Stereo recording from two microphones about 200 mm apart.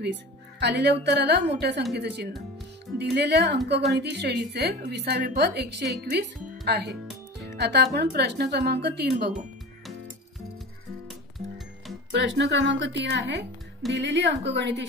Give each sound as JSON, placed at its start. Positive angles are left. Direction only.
{"t": 0.6, "sound": "a woman's voice", "side_deg": -60}
{"t": 11.1, "sound": "music", "side_deg": 0}
{"t": 12.1, "sound": "a woman's voice", "side_deg": -60}